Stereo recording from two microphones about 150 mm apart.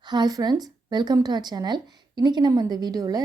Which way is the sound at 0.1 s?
25° right (ahead or behind).